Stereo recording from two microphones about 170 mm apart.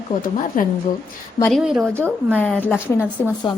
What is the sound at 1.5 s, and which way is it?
Speech, 5° right (ahead or behind).